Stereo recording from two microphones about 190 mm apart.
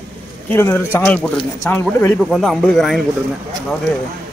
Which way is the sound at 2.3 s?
Centre (ahead or behind).